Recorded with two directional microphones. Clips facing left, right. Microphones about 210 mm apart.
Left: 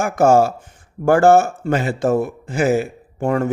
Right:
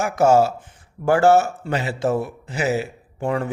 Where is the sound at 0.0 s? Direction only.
50° left (ahead or behind).